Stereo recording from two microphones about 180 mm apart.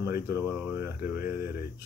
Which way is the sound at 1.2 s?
55° left (ahead or behind).